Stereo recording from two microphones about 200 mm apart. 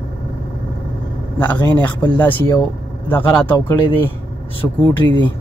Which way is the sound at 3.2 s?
25° left (ahead or behind).